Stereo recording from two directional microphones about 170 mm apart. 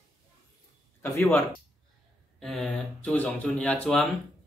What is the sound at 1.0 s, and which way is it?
Speech, 10° left (ahead or behind).